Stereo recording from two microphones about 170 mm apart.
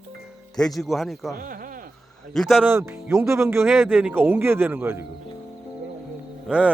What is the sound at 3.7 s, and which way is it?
Speech, 5° right (ahead or behind).